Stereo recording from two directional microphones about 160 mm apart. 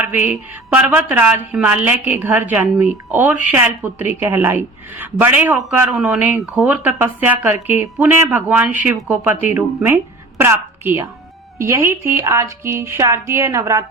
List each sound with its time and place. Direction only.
0.0 s a woman's voice: 10° right (ahead or behind)